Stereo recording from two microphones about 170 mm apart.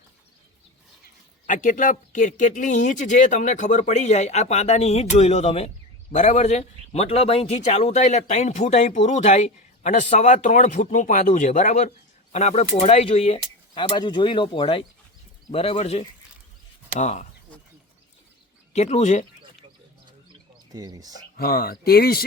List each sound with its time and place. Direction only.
1.5 s a man's voice: 50° left (ahead or behind)
18.7 s a man's voice: 40° left (ahead or behind)
20.7 s speech: 20° right (ahead or behind)
21.3 s speech: 60° left (ahead or behind)